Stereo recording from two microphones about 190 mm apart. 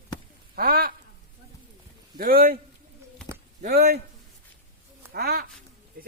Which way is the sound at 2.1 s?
50° right (ahead or behind).